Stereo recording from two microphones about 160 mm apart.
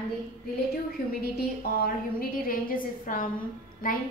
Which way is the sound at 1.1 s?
70° left (ahead or behind).